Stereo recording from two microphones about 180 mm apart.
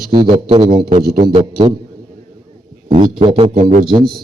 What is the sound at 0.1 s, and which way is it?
A man's voice, 25° right (ahead or behind).